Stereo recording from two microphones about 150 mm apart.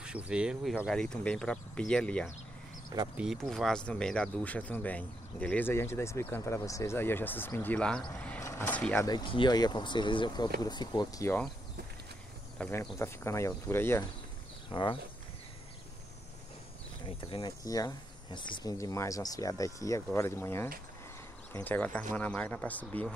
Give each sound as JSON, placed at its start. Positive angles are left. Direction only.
{"t": 0.0, "sound": "speech", "side_deg": -5}
{"t": 8.4, "sound": "speech", "side_deg": 15}
{"t": 9.0, "sound": "speech", "side_deg": 30}
{"t": 12.7, "sound": "speech", "side_deg": 20}
{"t": 14.7, "sound": "speech", "side_deg": 35}
{"t": 17.0, "sound": "speech", "side_deg": 35}